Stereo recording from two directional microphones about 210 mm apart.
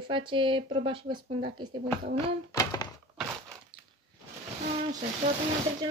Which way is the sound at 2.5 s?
15° left (ahead or behind).